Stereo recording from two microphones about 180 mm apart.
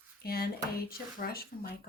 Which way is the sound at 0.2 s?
60° left (ahead or behind).